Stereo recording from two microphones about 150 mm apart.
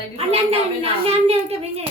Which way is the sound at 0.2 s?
40° right (ahead or behind).